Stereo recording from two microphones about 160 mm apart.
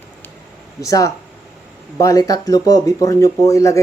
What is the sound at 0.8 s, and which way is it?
Speech, 20° left (ahead or behind).